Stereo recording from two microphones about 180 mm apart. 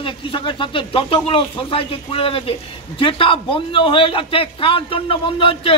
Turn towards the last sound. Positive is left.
turn(degrees=30)  # may be behind; listen again after turning